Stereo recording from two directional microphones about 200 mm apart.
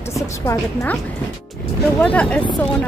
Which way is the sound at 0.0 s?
15° left (ahead or behind).